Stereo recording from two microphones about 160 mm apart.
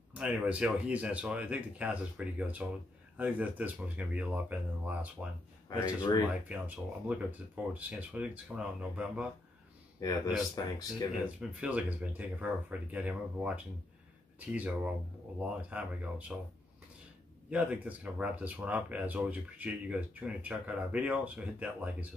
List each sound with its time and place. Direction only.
0.1 s speech: 5° right (ahead or behind)
5.7 s speech: 25° left (ahead or behind)
6.5 s speech: 10° right (ahead or behind)
9.9 s speech: 25° left (ahead or behind)
11.6 s speech: 10° right (ahead or behind)
17.5 s speech: 10° right (ahead or behind)